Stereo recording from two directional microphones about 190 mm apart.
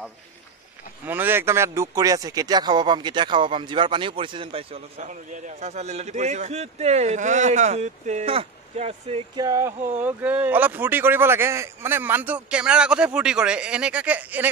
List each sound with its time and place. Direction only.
1.0 s speech: 10° right (ahead or behind)